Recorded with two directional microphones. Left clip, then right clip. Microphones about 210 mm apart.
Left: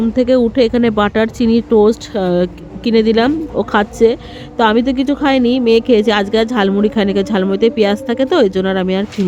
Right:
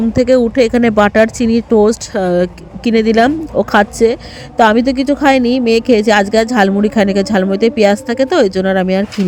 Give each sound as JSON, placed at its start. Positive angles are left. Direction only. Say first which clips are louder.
{"t": 0.1, "sound": "speech", "louder": "right 2 dB", "side_deg": -30}